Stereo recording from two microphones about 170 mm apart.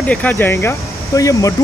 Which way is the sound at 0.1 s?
10° left (ahead or behind).